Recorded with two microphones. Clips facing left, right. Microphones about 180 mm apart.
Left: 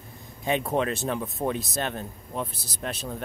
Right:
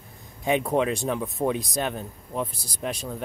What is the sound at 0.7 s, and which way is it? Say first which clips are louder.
Speech: right 2 dB; 10° right (ahead or behind).